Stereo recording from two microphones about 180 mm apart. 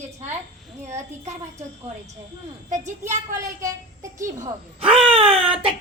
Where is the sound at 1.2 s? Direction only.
40° right (ahead or behind).